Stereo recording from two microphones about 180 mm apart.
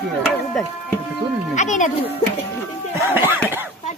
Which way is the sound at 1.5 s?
40° left (ahead or behind).